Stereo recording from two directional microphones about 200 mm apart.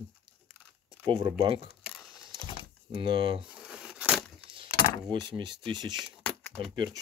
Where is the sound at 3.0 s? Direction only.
25° right (ahead or behind).